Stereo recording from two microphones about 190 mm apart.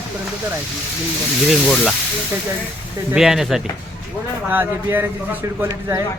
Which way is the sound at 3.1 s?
Centre (ahead or behind).